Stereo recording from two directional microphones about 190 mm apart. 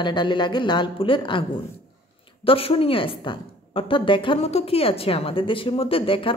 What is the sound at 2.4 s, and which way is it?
A woman's voice, 30° left (ahead or behind).